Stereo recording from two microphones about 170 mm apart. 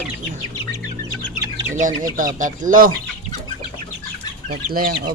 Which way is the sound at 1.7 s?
50° right (ahead or behind).